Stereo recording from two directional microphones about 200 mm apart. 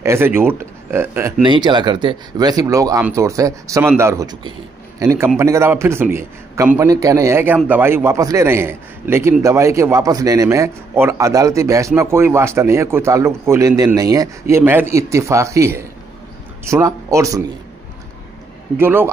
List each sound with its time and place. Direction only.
0.0 s a man's voice: 10° right (ahead or behind)
1.4 s a man's voice: 25° right (ahead or behind)
18.8 s a man's voice: 10° right (ahead or behind)